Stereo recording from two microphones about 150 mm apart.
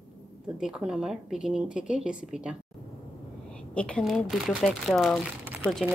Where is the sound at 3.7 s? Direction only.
5° left (ahead or behind).